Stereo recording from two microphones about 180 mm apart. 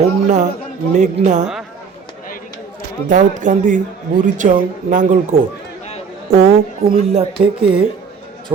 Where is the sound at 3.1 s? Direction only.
45° right (ahead or behind).